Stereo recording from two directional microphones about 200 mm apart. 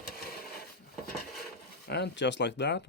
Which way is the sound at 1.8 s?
55° left (ahead or behind).